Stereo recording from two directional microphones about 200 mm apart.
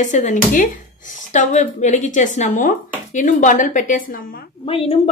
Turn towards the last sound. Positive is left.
turn(degrees=30)  # may be behind; listen again after turning